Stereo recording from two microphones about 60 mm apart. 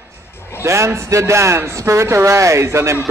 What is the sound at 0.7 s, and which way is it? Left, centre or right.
Speech, right.